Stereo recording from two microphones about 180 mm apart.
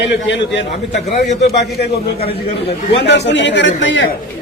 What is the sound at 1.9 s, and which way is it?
Speech, 35° left (ahead or behind).